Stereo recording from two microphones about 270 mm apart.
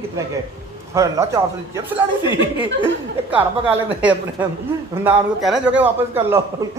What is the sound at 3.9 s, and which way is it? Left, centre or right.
A man's voice, centre.